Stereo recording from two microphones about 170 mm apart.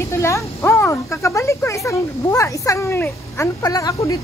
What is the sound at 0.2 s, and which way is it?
Speech, 15° left (ahead or behind).